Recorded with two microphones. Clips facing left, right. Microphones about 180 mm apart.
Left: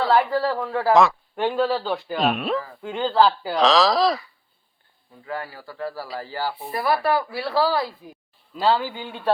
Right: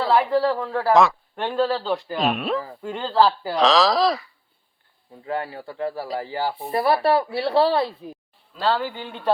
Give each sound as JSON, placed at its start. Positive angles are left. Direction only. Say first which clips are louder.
{"t": 0.1, "sound": "speech", "louder": "right 4 dB", "side_deg": 0}
{"t": 5.2, "sound": "speech", "louder": "right 4 dB", "side_deg": -25}
{"t": 6.6, "sound": "speech", "louder": "right 3 dB", "side_deg": -30}
{"t": 8.5, "sound": "a man's voice", "louder": "left 2 dB", "side_deg": 10}